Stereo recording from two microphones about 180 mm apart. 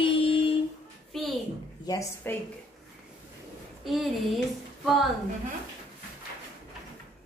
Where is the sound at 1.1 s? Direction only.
Centre (ahead or behind).